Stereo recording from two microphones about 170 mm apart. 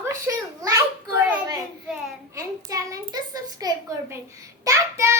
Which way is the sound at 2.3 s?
20° right (ahead or behind).